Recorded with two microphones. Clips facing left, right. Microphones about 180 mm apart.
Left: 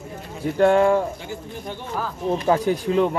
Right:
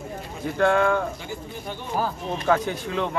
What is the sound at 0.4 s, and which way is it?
Speech, 30° left (ahead or behind).